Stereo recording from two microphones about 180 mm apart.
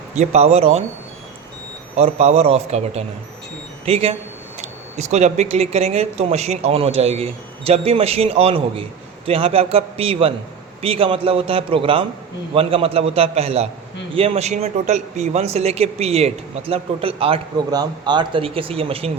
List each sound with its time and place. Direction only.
0.1 s speech: 40° right (ahead or behind)
2.0 s speech: 40° right (ahead or behind)